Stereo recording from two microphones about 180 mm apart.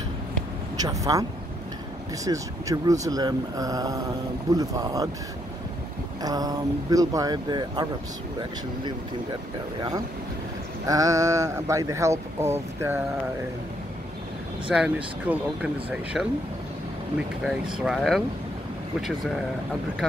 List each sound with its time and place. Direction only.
0.7 s speech: 20° right (ahead or behind)
2.2 s speech: 20° right (ahead or behind)
6.2 s speech: 20° right (ahead or behind)
9.8 s speech: 20° right (ahead or behind)
14.7 s speech: 5° right (ahead or behind)
17.8 s speech: centre (ahead or behind)